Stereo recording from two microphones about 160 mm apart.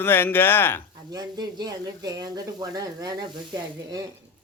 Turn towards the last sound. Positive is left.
turn(degrees=-25)  # may be behind; listen again after turning